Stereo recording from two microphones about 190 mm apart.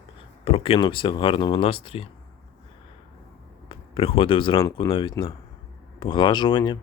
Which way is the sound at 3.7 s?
30° left (ahead or behind).